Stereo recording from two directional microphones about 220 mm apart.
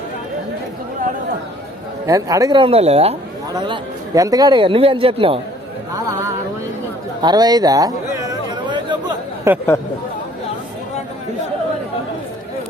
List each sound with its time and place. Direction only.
2.0 s speech: 15° right (ahead or behind)
7.2 s chatter: 20° right (ahead or behind)